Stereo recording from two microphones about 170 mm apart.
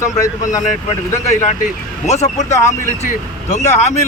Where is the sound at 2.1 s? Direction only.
40° left (ahead or behind).